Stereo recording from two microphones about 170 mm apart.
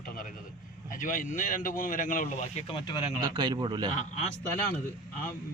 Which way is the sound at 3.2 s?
25° right (ahead or behind).